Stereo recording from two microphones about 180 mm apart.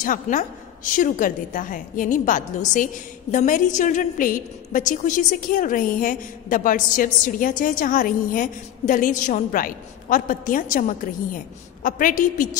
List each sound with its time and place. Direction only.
0.0 s a woman's voice: 45° left (ahead or behind)